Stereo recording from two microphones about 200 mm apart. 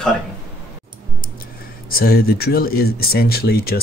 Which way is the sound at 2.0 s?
50° left (ahead or behind).